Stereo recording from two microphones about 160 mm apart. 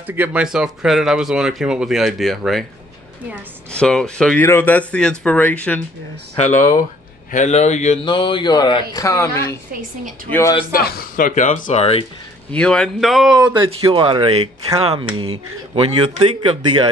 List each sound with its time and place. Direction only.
0.0 s speech: 10° right (ahead or behind)
3.7 s speech: 5° left (ahead or behind)
7.2 s a man's voice: 50° left (ahead or behind)
8.0 s a man's voice: 30° left (ahead or behind)
9.7 s a woman's voice: 60° right (ahead or behind)
10.7 s speech: 70° left (ahead or behind); by 11.8 s 50° left (ahead or behind)
11.8 s speech: 35° left (ahead or behind)
12.4 s speech: 5° left (ahead or behind)
13.5 s speech: 30° right (ahead or behind)